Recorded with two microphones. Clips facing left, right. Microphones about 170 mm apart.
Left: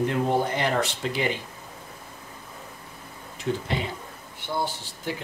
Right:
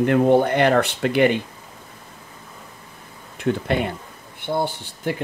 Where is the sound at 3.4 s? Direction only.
60° right (ahead or behind).